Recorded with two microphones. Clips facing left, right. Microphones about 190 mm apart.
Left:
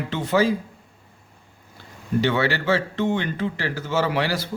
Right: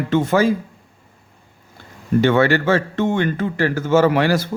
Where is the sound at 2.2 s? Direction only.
50° right (ahead or behind).